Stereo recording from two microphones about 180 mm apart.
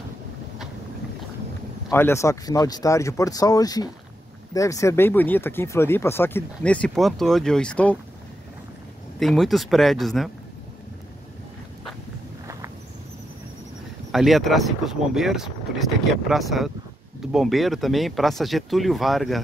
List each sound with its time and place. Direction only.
1.9 s speech: 15° left (ahead or behind)
9.2 s speech: centre (ahead or behind)
14.1 s speech: centre (ahead or behind)